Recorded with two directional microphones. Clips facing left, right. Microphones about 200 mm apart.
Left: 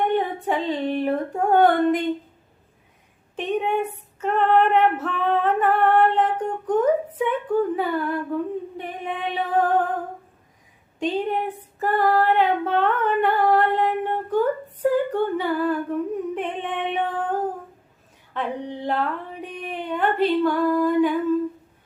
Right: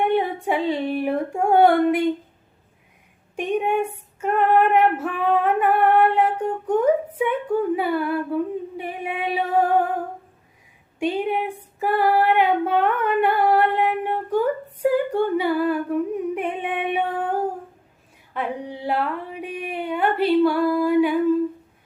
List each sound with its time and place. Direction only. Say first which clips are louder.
0.0 s female singing: right 1 dB; 10° right (ahead or behind)
3.3 s female singing: right 1 dB; 10° right (ahead or behind)
11.0 s female singing: right 1 dB; 10° right (ahead or behind)
18.3 s a sound: even; 10° right (ahead or behind)